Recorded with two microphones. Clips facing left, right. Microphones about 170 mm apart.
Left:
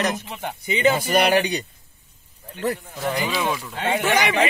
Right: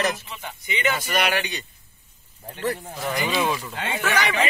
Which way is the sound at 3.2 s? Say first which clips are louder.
Right 4 dB; 10° right (ahead or behind).